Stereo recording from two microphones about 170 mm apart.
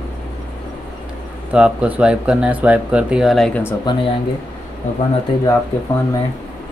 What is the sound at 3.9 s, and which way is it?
Speech, 25° left (ahead or behind).